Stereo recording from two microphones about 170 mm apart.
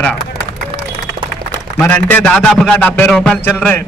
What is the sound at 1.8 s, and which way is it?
A man's voice, 10° left (ahead or behind).